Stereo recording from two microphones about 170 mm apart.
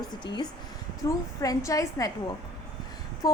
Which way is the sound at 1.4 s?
20° left (ahead or behind).